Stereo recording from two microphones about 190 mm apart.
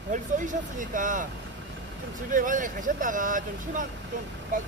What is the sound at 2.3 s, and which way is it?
Speech, 45° right (ahead or behind).